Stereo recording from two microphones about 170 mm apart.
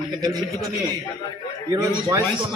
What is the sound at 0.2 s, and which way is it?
Speech, 25° right (ahead or behind).